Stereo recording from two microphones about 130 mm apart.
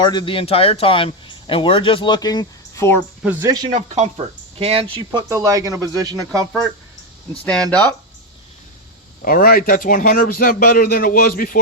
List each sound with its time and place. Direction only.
0.0 s a man's voice: 35° left (ahead or behind)
3.4 s speech: 30° right (ahead or behind)
3.7 s speech: 65° right (ahead or behind); by 5.2 s 40° right (ahead or behind)
5.3 s speech: 25° right (ahead or behind)
7.4 s speech: 10° left (ahead or behind)
9.2 s a man's voice: 90° left